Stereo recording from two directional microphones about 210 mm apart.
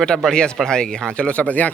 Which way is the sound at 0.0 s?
Centre (ahead or behind).